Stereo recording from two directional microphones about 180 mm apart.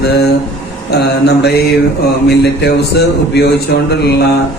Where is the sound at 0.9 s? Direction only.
65° left (ahead or behind).